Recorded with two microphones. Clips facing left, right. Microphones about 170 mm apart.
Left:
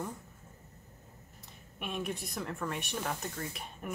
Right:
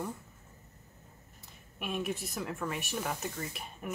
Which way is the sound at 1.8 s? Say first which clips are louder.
Right 2 dB; 5° right (ahead or behind).